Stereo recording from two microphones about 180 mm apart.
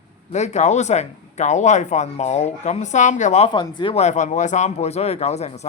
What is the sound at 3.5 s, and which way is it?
Speech, 25° left (ahead or behind).